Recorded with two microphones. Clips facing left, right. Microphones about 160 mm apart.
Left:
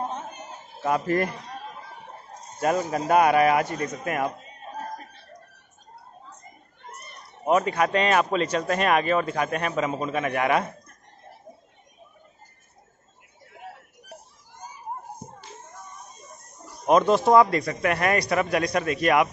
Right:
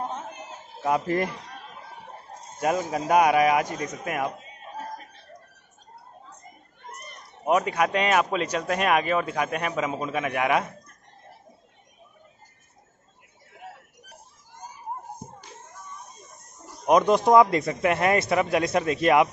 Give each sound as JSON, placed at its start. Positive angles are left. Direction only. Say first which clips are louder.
{"t": 0.8, "sound": "speech", "louder": "left 1 dB", "side_deg": -15}
{"t": 2.6, "sound": "speech", "louder": "left 1 dB", "side_deg": -10}
{"t": 7.4, "sound": "speech", "louder": "left 1 dB", "side_deg": -10}
{"t": 16.8, "sound": "a man's voice", "louder": "even", "side_deg": -15}